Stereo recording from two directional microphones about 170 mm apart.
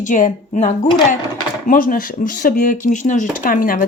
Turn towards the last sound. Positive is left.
turn(degrees=55)  # may be behind; listen again after turning